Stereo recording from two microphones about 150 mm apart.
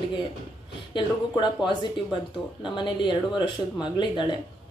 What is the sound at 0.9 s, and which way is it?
A woman's voice, 30° left (ahead or behind).